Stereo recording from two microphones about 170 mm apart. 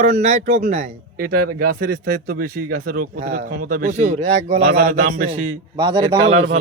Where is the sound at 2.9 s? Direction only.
50° right (ahead or behind).